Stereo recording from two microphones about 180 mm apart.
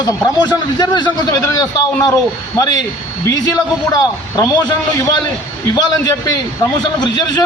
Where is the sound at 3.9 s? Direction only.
20° left (ahead or behind).